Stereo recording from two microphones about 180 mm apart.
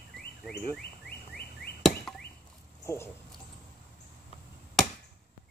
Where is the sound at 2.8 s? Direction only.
15° left (ahead or behind).